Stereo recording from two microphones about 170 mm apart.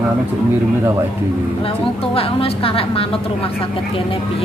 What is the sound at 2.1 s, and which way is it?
Speech, 35° left (ahead or behind).